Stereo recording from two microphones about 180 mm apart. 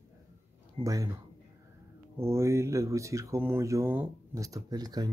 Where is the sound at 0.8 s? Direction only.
20° right (ahead or behind).